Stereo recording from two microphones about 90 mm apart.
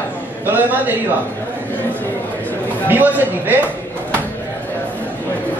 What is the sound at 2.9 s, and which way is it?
Speech, 20° right (ahead or behind).